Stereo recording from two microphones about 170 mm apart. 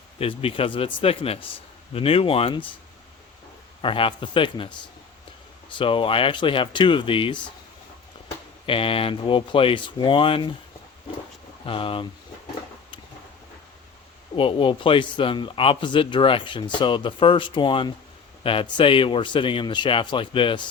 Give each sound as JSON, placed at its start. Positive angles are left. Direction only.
{"t": 0.2, "sound": "speech", "side_deg": 35}
{"t": 3.8, "sound": "speech", "side_deg": 30}
{"t": 5.7, "sound": "a man's voice", "side_deg": 30}
{"t": 8.6, "sound": "speech", "side_deg": 30}
{"t": 11.6, "sound": "speech", "side_deg": 30}
{"t": 14.3, "sound": "a man's voice", "side_deg": 30}